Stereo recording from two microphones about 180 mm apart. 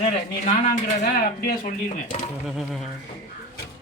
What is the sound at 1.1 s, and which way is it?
Speech, 55° left (ahead or behind).